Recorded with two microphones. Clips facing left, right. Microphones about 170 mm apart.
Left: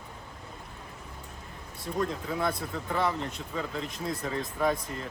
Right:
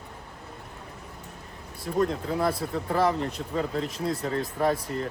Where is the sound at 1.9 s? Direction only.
35° right (ahead or behind).